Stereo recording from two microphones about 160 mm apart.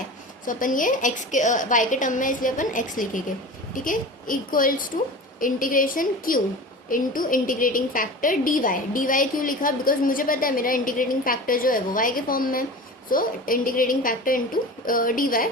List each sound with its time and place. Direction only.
0.4 s a woman's voice: 55° left (ahead or behind)